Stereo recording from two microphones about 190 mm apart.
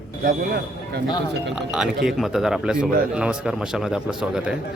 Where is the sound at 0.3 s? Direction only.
50° right (ahead or behind).